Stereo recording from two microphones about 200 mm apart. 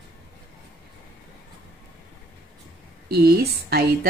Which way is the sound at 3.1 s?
50° right (ahead or behind).